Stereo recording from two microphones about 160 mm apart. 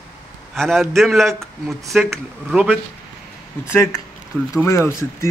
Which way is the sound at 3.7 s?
15° left (ahead or behind).